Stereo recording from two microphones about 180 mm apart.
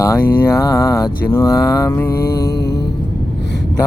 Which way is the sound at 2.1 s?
60° left (ahead or behind).